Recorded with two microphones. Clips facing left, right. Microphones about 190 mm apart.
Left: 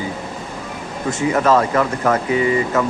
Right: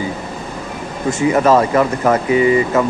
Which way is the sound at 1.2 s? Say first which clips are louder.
Right 3 dB; 10° right (ahead or behind).